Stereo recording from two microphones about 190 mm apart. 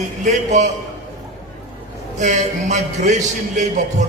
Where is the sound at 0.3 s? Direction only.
40° right (ahead or behind).